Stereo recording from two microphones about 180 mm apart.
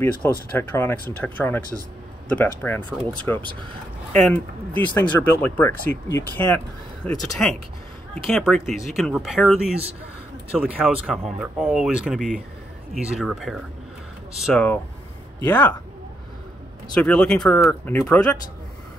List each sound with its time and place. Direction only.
0.0 s speech: 10° left (ahead or behind)
2.9 s speech: 5° right (ahead or behind)
4.1 s speech: 5° left (ahead or behind)
10.8 s speech: 5° right (ahead or behind)
16.9 s speech: 5° left (ahead or behind)